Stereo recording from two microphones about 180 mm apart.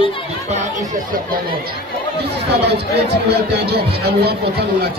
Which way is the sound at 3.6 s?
60° right (ahead or behind).